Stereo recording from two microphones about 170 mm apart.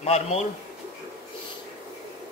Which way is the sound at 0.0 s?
40° left (ahead or behind).